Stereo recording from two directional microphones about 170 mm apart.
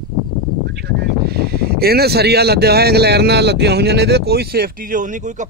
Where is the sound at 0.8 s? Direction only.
70° right (ahead or behind).